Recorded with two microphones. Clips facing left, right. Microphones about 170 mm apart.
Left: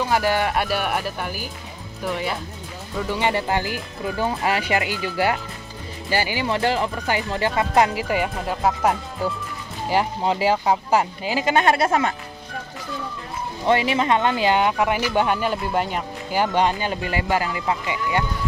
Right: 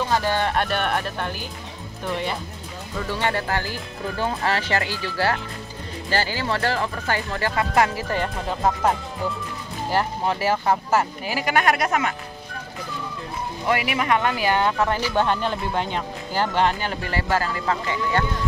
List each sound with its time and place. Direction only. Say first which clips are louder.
0.0 s speech: left 2 dB; 10° left (ahead or behind)
3.0 s speech: left 2 dB; 15° left (ahead or behind); by 12.1 s 30° left (ahead or behind)
13.7 s speech: left 3 dB; 25° left (ahead or behind)